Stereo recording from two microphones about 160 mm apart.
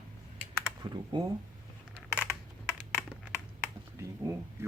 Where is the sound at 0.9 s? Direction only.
25° right (ahead or behind).